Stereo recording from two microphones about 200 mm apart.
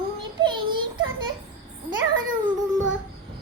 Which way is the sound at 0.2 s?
25° right (ahead or behind).